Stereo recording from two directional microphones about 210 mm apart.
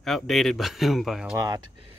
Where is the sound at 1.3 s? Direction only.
15° right (ahead or behind).